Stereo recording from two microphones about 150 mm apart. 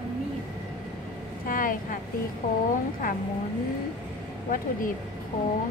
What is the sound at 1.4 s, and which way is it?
Vehicle, 65° left (ahead or behind).